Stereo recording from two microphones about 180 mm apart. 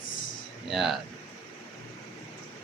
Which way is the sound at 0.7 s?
Centre (ahead or behind).